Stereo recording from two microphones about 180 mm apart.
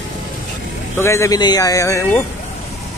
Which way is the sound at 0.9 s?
15° left (ahead or behind).